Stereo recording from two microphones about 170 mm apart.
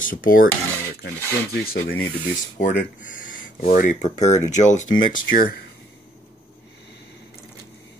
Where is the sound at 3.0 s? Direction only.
50° left (ahead or behind).